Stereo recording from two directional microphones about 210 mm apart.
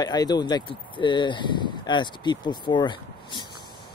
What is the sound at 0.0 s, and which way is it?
Speech, 20° left (ahead or behind).